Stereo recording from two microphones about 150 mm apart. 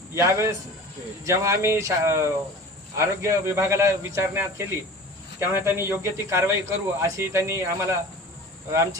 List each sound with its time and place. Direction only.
0.1 s a man's voice: 20° right (ahead or behind)